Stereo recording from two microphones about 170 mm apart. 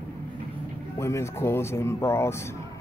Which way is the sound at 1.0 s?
15° left (ahead or behind).